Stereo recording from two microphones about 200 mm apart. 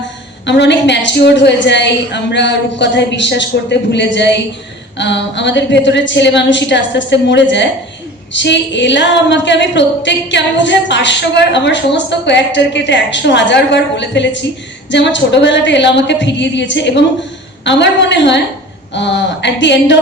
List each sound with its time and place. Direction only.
0.4 s a woman's voice: 60° left (ahead or behind)